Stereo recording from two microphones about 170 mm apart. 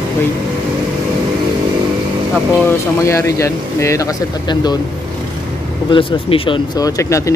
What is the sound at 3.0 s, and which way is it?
Speech, 15° left (ahead or behind).